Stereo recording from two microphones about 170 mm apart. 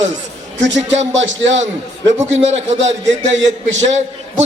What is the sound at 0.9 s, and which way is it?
Speech, 90° right.